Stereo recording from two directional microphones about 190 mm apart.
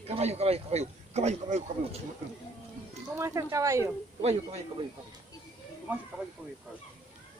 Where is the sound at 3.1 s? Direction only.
15° right (ahead or behind).